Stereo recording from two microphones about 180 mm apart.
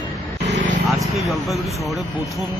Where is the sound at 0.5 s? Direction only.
45° right (ahead or behind).